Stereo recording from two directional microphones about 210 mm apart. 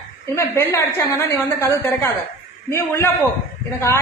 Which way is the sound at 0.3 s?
15° left (ahead or behind).